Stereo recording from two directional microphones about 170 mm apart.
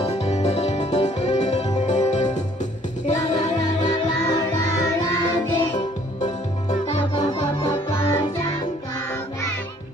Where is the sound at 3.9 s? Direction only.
20° left (ahead or behind).